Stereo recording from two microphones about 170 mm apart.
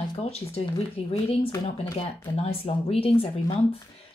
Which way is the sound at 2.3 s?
35° left (ahead or behind).